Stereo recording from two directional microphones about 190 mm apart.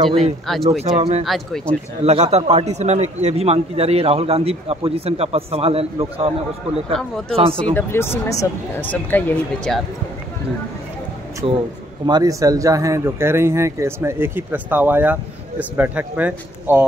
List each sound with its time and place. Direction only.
0.5 s speech: centre (ahead or behind)
2.0 s a man's voice: 35° right (ahead or behind)
6.9 s speech: 5° left (ahead or behind)
7.3 s a man's voice: 30° right (ahead or behind)
7.7 s speech: 15° left (ahead or behind)
11.4 s a man's voice: 30° right (ahead or behind)
12.1 s speech: 20° right (ahead or behind)